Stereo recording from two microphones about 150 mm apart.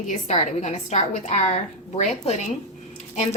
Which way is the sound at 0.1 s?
50° left (ahead or behind).